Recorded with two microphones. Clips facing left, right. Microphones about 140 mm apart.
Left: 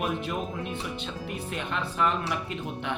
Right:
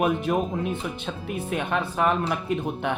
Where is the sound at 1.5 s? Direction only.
55° right (ahead or behind).